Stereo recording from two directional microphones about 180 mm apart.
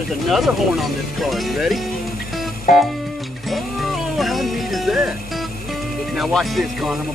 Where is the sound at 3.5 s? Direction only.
Centre (ahead or behind).